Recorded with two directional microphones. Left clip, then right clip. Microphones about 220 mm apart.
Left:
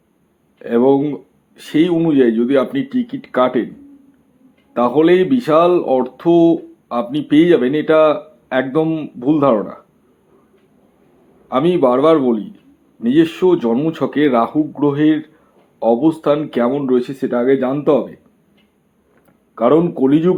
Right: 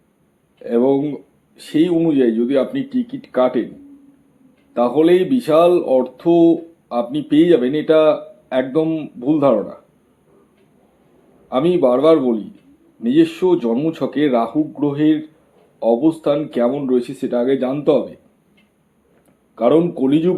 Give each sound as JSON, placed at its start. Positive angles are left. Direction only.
{"t": 0.6, "sound": "speech", "side_deg": 20}
{"t": 4.7, "sound": "speech", "side_deg": 20}
{"t": 11.4, "sound": "speech", "side_deg": 20}
{"t": 19.5, "sound": "speech", "side_deg": 20}